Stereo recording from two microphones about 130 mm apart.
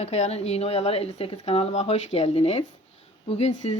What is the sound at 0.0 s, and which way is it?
Speech, 55° left (ahead or behind).